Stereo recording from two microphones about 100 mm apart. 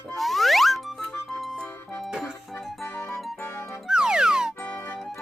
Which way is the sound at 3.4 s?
20° left (ahead or behind).